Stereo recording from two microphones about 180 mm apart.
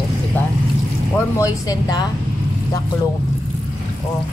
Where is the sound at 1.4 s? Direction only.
20° left (ahead or behind).